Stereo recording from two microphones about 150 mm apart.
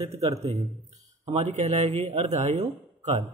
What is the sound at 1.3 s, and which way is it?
A man's voice, 45° right (ahead or behind).